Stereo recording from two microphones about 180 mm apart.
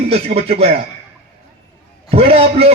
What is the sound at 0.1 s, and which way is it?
Speech, 35° right (ahead or behind).